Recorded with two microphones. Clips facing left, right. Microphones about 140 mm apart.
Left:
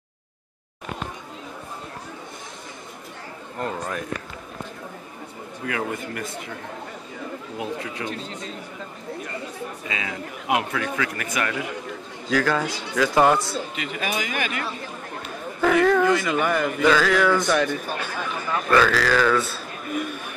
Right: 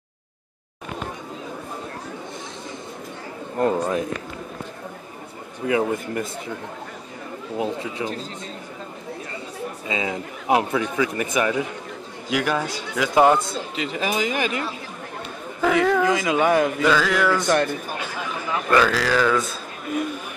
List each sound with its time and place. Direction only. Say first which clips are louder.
3.5 s speech: right 8 dB; 30° right (ahead or behind)
5.7 s speech: right 6 dB; 20° right (ahead or behind)
7.5 s speech: right 6 dB; 25° right (ahead or behind)
9.8 s a man's voice: right 7 dB; 25° right (ahead or behind)
13.8 s speech: right 4 dB; 30° right (ahead or behind)
15.6 s a man's voice: left 1 dB; 10° right (ahead or behind)
16.8 s a sound: left 1 dB; 5° right (ahead or behind)
18.5 s a man's voice: even; 15° right (ahead or behind)